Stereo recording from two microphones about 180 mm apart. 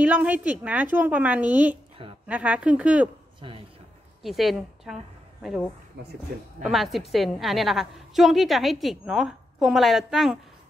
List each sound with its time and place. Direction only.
0.0 s speech: 5° right (ahead or behind)
3.3 s a sound: 30° right (ahead or behind)
4.2 s a woman's voice: centre (ahead or behind)